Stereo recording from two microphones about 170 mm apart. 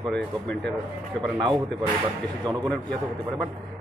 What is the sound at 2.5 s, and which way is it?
Speech, 25° right (ahead or behind).